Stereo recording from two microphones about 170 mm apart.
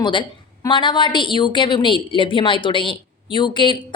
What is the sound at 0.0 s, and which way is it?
A woman's voice, 30° left (ahead or behind).